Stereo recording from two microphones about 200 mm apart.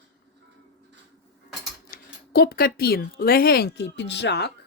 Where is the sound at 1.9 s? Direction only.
50° left (ahead or behind).